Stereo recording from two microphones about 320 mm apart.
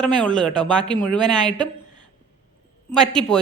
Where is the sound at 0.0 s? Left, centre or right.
Centre.